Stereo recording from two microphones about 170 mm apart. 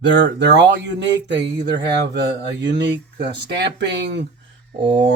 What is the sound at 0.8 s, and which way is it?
Speech, 90° right.